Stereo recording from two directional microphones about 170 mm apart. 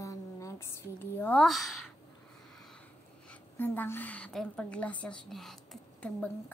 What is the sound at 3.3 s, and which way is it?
A woman's voice, 10° left (ahead or behind).